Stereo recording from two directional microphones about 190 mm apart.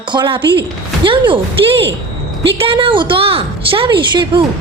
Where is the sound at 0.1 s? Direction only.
25° right (ahead or behind).